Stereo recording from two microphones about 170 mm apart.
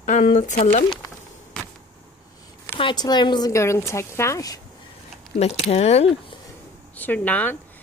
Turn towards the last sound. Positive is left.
turn(degrees=10)  # may be behind; listen again after turning